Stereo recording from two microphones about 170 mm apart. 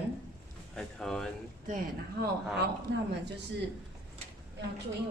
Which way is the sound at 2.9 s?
90° right.